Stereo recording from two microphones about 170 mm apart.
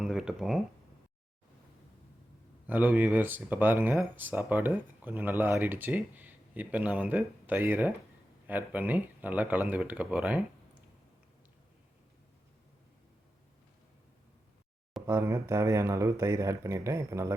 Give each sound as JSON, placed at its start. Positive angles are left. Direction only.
{"t": 0.0, "sound": "a sound", "side_deg": -5}
{"t": 2.6, "sound": "speech", "side_deg": -10}
{"t": 15.0, "sound": "speech", "side_deg": -15}